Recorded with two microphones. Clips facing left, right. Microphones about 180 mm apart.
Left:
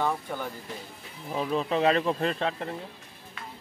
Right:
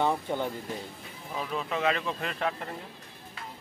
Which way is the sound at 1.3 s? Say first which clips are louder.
Left 5 dB; 30° left (ahead or behind).